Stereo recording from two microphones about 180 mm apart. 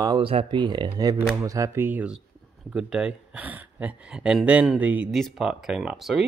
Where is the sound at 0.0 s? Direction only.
25° right (ahead or behind).